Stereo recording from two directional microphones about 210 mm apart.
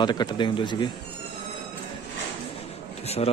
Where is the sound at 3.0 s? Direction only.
30° left (ahead or behind).